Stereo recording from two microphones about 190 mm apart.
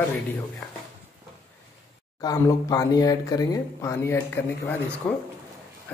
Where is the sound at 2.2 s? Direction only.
15° left (ahead or behind).